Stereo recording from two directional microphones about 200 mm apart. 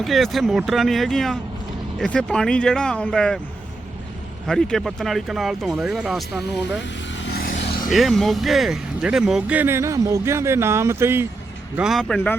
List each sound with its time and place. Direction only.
0.0 s speech: centre (ahead or behind)
4.4 s speech: centre (ahead or behind)
7.3 s a sound: 50° left (ahead or behind)
7.9 s speech: centre (ahead or behind)
11.8 s speech: centre (ahead or behind)